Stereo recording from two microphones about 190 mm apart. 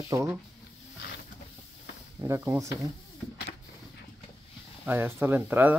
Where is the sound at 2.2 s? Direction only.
15° right (ahead or behind).